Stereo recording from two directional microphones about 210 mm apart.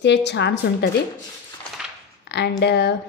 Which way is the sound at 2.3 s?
55° left (ahead or behind).